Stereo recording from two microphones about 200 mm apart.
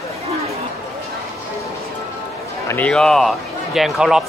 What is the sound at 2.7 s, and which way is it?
A man's voice, 5° left (ahead or behind).